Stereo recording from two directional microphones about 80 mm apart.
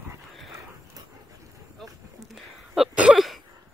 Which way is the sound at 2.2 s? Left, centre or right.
Centre.